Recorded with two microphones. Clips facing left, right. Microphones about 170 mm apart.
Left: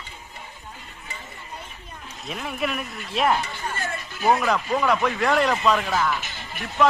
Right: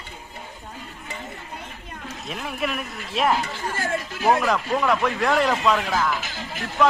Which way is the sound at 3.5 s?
90° right.